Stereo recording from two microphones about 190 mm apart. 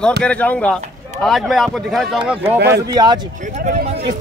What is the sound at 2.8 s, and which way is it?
Speech, 20° right (ahead or behind).